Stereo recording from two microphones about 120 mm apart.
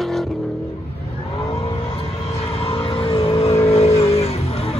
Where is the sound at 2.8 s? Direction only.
45° left (ahead or behind).